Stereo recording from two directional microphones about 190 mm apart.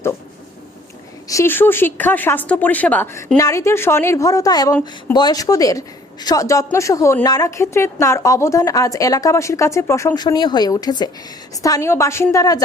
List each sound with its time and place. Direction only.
1.3 s a woman's voice: 15° left (ahead or behind)